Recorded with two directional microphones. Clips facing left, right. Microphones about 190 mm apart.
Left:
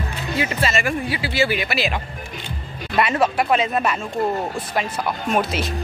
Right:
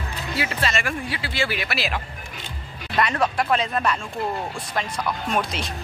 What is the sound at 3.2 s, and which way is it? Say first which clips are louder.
Speech: left 3 dB; 5° left (ahead or behind).